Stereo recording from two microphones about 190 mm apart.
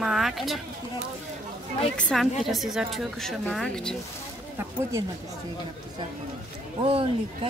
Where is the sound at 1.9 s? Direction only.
Centre (ahead or behind).